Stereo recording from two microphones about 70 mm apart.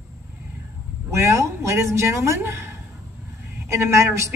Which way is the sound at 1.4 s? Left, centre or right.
Right.